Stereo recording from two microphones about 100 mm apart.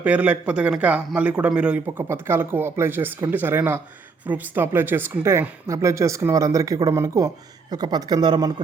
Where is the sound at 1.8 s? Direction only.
25° right (ahead or behind).